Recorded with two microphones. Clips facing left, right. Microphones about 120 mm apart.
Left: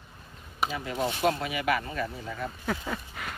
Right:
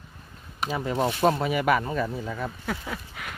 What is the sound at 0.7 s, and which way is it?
Speech, 35° right (ahead or behind).